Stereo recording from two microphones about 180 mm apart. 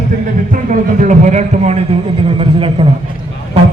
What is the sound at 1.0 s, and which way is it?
A man's voice, 45° right (ahead or behind).